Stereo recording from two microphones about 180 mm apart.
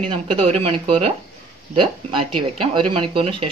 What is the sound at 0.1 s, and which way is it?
Speech, 30° right (ahead or behind).